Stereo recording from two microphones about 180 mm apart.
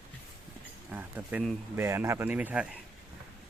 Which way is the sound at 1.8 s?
15° right (ahead or behind).